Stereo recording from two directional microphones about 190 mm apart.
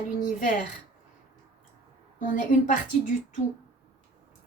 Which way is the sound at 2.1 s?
45° left (ahead or behind).